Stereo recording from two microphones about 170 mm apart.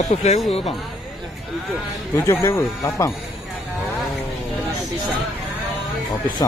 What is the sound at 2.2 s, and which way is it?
Speech, 15° left (ahead or behind).